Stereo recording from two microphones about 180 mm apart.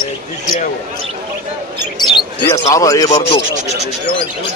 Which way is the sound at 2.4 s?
20° left (ahead or behind).